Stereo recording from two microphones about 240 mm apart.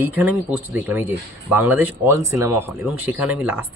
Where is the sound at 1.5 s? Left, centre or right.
Centre.